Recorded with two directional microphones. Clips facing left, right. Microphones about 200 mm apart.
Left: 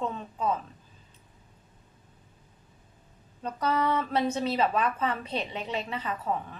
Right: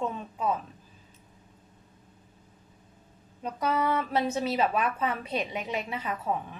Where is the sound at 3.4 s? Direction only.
10° right (ahead or behind).